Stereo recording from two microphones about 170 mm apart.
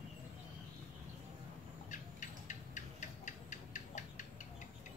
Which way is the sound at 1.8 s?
45° left (ahead or behind).